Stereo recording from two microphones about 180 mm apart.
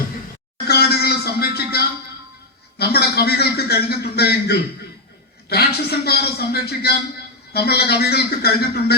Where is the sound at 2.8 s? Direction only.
60° left (ahead or behind).